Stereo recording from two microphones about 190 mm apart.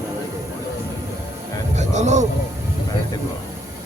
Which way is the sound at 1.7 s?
35° right (ahead or behind).